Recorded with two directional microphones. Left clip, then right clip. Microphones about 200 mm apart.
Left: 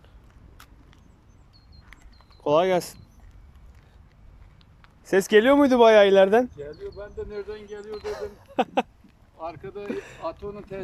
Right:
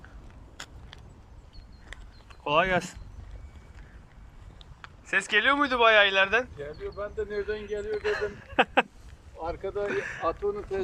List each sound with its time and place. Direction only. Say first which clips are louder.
0.5 s vehicle: right 9 dB; 40° right (ahead or behind)
2.4 s speech: left 4 dB; 25° left (ahead or behind)
5.0 s speech: left 5 dB; 30° left (ahead or behind)
10.5 s speech: right 5 dB; 40° left (ahead or behind)